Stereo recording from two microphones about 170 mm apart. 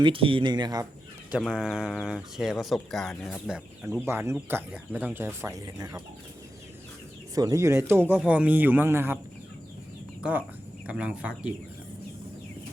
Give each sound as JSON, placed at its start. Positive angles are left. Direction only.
{"t": 0.0, "sound": "speech", "side_deg": -30}
{"t": 1.3, "sound": "speech", "side_deg": -5}
{"t": 4.0, "sound": "speech", "side_deg": -15}
{"t": 7.3, "sound": "speech", "side_deg": -20}
{"t": 10.8, "sound": "speech", "side_deg": -5}